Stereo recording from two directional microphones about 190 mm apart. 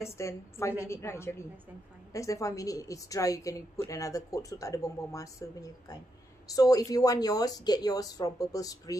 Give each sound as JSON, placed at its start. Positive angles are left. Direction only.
{"t": 0.0, "sound": "a woman's voice", "side_deg": 15}